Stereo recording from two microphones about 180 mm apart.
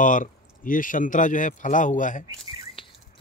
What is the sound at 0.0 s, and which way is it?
Speech, 45° left (ahead or behind).